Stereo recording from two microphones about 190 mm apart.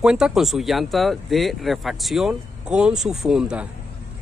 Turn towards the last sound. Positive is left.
turn(degrees=-5)  # may be behind; listen again after turning